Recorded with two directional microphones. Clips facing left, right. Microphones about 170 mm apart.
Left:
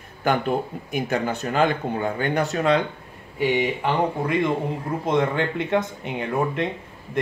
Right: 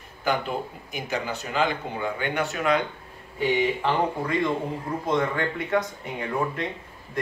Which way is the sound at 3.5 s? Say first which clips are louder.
Right 1 dB; 20° left (ahead or behind).